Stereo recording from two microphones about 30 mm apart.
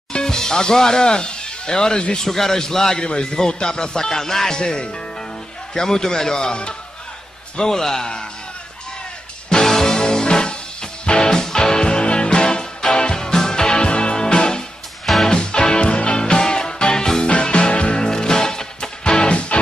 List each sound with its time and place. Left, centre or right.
0.1 s speech: left
2.1 s a man's voice: centre
4.6 s speech: left
9.5 s music: centre
9.8 s music: left
15.8 s music: left
17.4 s music: left
17.9 s music: left
19.5 s music: left